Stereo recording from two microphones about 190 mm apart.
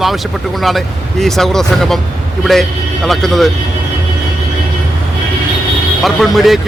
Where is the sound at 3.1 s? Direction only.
Centre (ahead or behind).